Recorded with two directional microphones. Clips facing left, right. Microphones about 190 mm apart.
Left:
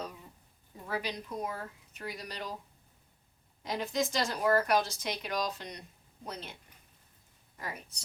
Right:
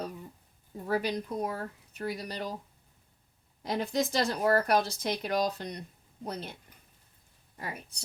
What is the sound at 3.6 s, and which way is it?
Speech, 35° right (ahead or behind).